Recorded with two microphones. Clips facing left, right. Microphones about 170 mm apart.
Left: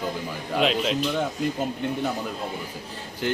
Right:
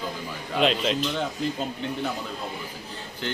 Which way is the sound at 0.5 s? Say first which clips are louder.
Even; centre (ahead or behind).